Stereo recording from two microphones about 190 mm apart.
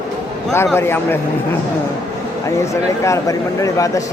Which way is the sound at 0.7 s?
10° left (ahead or behind).